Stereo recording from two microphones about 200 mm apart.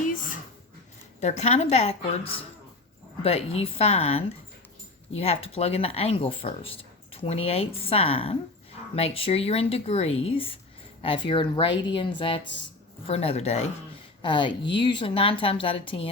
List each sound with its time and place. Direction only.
1.2 s a woman's voice: 35° left (ahead or behind)